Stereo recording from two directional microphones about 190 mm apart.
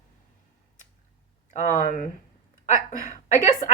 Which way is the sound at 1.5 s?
40° left (ahead or behind).